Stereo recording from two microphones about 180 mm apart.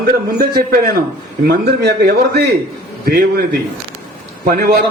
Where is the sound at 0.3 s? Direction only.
55° right (ahead or behind).